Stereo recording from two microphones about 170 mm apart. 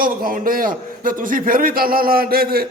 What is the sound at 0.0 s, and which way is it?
A man's voice, 55° right (ahead or behind).